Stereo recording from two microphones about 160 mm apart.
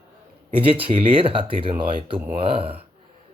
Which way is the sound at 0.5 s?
35° right (ahead or behind).